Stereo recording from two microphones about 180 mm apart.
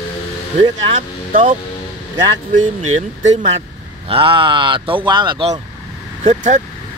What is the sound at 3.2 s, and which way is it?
Speech, 35° right (ahead or behind).